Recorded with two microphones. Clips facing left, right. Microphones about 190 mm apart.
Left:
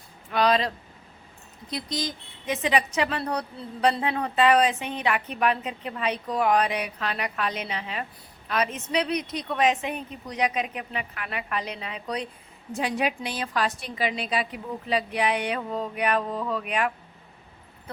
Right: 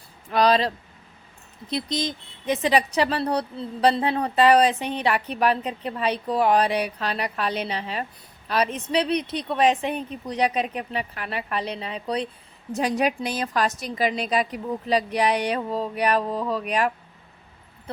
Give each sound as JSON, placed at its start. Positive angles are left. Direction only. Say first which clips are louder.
{"t": 0.3, "sound": "a woman's voice", "louder": "right 3 dB", "side_deg": -35}
{"t": 1.7, "sound": "speech", "louder": "right 4 dB", "side_deg": -25}
{"t": 2.5, "sound": "a woman's voice", "louder": "right 3 dB", "side_deg": -35}
{"t": 12.7, "sound": "a woman's voice", "louder": "right 4 dB", "side_deg": -40}